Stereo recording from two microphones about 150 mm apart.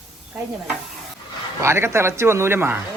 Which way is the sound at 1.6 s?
15° right (ahead or behind).